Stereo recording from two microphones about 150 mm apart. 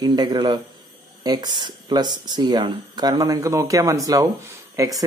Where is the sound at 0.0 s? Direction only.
25° right (ahead or behind).